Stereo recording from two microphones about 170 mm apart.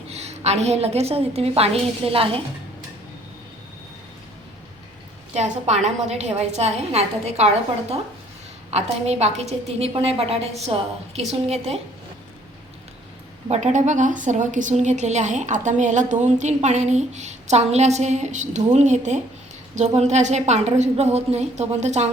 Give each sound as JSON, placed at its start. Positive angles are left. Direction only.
{"t": 0.1, "sound": "a woman's voice", "side_deg": -40}
{"t": 5.3, "sound": "a woman's voice", "side_deg": -40}
{"t": 13.5, "sound": "a woman's voice", "side_deg": -45}